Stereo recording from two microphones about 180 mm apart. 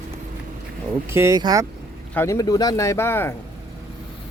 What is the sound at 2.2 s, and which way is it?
Speech, 20° left (ahead or behind).